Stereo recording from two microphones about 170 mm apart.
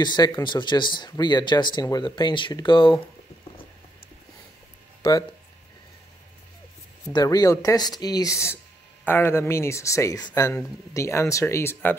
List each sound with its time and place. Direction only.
0.0 s speech: 25° left (ahead or behind)
7.1 s speech: 25° left (ahead or behind)